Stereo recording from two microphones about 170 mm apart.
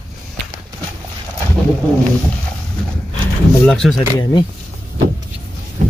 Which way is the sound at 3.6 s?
Centre (ahead or behind).